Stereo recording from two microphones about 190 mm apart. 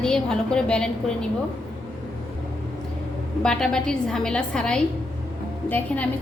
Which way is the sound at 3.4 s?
5° left (ahead or behind).